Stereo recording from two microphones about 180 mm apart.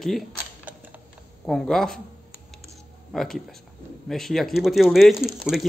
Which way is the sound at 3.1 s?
Centre (ahead or behind).